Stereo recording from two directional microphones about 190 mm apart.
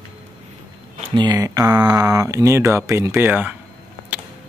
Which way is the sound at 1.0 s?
30° right (ahead or behind).